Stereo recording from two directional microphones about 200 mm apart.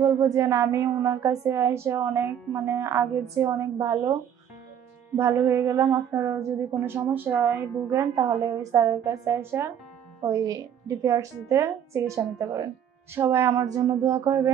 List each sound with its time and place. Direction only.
0.0 s a woman's voice: 15° right (ahead or behind)
5.1 s a woman's voice: 10° right (ahead or behind)
13.1 s a woman's voice: 10° right (ahead or behind)